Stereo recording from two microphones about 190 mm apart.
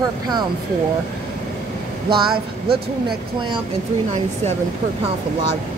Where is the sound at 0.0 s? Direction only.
20° right (ahead or behind).